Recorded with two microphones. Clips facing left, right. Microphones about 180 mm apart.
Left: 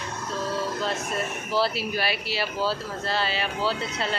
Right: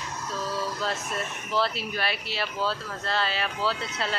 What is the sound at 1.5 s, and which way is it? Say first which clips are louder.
Speech: left 2 dB; 5° left (ahead or behind).